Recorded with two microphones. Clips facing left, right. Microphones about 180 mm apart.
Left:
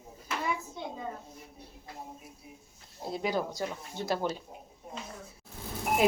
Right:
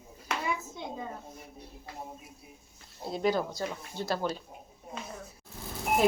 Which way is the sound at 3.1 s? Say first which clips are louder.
Right 3 dB; 10° left (ahead or behind).